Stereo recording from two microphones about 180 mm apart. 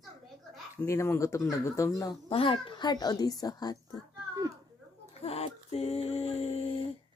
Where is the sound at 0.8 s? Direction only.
15° left (ahead or behind).